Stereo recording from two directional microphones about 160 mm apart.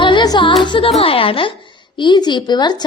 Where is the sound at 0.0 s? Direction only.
30° left (ahead or behind).